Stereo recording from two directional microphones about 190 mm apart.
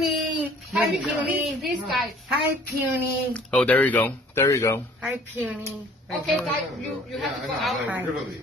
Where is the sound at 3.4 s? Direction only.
5° left (ahead or behind).